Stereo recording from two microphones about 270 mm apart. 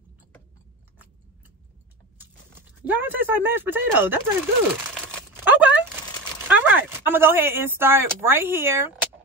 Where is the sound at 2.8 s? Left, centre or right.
Centre.